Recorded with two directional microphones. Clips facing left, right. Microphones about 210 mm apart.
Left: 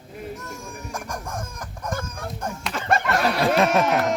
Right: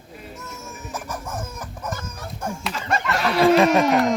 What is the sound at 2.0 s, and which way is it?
Fowl, 10° right (ahead or behind).